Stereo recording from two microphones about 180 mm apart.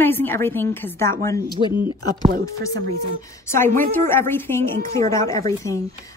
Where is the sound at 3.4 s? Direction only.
15° left (ahead or behind).